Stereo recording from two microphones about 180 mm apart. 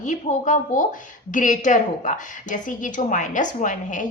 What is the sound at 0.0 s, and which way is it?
A woman's voice, 45° left (ahead or behind).